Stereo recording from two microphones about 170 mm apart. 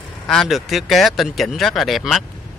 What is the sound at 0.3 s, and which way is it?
Speech, centre (ahead or behind).